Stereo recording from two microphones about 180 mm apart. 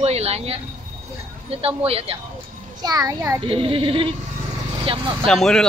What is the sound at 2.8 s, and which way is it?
Speech, 20° right (ahead or behind).